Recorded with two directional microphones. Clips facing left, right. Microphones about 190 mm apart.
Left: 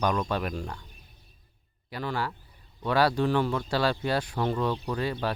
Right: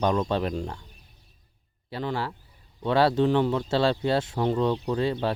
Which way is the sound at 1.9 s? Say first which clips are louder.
Right 2 dB; 25° right (ahead or behind).